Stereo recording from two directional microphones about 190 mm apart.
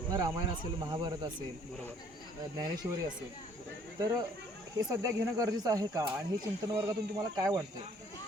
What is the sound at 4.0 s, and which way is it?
Speech, 20° right (ahead or behind).